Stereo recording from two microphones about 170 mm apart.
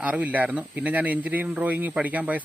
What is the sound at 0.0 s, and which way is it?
Speech, 10° right (ahead or behind).